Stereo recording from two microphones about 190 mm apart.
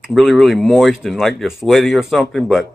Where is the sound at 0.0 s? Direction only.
Centre (ahead or behind).